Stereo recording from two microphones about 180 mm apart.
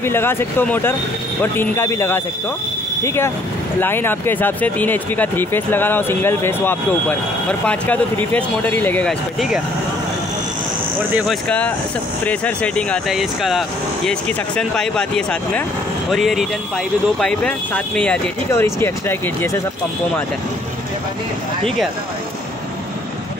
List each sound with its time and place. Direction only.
0.0 s speech: 15° left (ahead or behind)
11.1 s speech: 5° left (ahead or behind)